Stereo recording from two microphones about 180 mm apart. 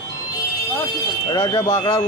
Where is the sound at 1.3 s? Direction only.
20° left (ahead or behind).